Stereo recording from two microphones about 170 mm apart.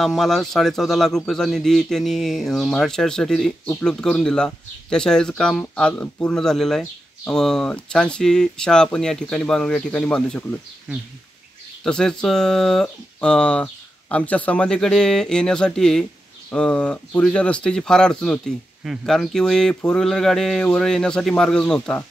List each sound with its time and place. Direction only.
0.0 s a man's voice: centre (ahead or behind)
11.8 s a man's voice: 5° left (ahead or behind)